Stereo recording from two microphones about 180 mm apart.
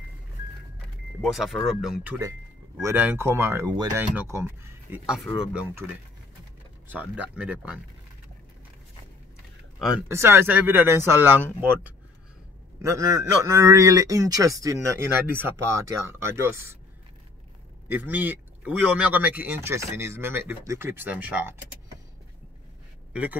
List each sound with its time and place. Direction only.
1.2 s speech: centre (ahead or behind)
10.0 s speech: 15° right (ahead or behind)
17.8 s speech: 10° right (ahead or behind)